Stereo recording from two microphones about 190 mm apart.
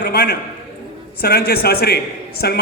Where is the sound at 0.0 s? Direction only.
55° left (ahead or behind).